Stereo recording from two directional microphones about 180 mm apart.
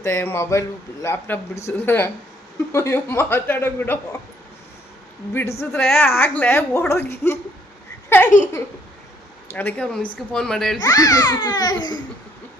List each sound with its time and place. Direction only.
0.0 s a woman's voice: 15° left (ahead or behind)
5.3 s a woman's voice: 15° left (ahead or behind)
9.5 s a woman's voice: 10° left (ahead or behind)
10.8 s a child's voice: 20° left (ahead or behind)